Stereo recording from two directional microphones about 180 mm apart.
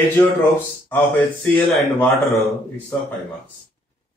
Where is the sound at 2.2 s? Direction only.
15° left (ahead or behind).